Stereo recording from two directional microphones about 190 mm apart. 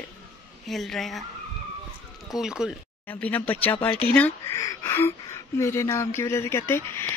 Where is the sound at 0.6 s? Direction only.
Centre (ahead or behind).